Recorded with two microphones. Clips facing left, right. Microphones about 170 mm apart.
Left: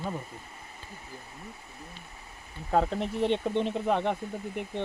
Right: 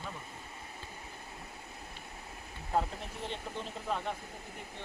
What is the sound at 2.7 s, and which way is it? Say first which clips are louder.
Speech: left 7 dB; 70° left (ahead or behind).